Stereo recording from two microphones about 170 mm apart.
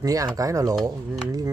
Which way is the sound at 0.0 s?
20° right (ahead or behind).